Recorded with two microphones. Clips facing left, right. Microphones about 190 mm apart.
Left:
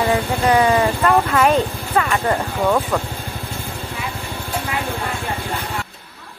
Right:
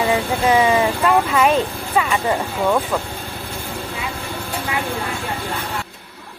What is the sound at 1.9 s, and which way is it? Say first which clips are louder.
Speech: even; 15° right (ahead or behind).